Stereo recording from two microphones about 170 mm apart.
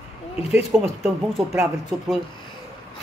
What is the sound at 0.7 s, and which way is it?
Speech, 5° right (ahead or behind).